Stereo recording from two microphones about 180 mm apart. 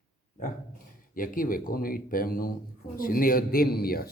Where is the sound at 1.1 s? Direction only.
50° left (ahead or behind).